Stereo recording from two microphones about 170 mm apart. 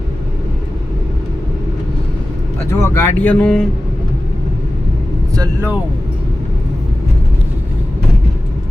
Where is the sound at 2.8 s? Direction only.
15° left (ahead or behind).